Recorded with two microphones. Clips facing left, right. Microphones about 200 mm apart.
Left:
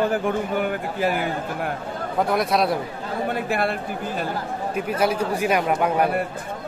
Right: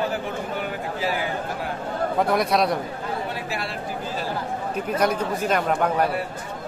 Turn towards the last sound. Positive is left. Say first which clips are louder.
# left 1 dB
turn(degrees=10)  # may be behind; listen again after turning